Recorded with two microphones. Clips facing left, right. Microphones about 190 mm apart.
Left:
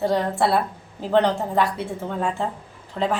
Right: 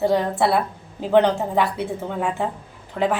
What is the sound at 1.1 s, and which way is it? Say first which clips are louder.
A woman's voice: right 2 dB; 15° right (ahead or behind).